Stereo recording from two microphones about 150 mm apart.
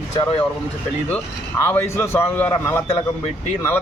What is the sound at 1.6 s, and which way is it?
A man's voice, 15° left (ahead or behind).